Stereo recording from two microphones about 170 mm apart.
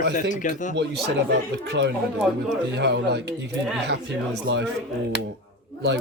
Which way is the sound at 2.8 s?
90° right.